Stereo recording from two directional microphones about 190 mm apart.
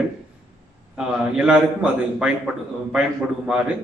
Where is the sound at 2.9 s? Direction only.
5° right (ahead or behind).